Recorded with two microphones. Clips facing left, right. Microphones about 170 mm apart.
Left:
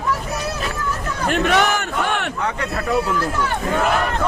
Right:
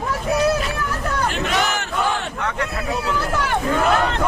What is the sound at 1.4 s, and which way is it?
Battle cry, 65° left (ahead or behind).